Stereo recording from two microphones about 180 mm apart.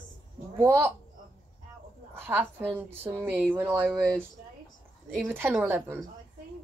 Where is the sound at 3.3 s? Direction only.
10° right (ahead or behind).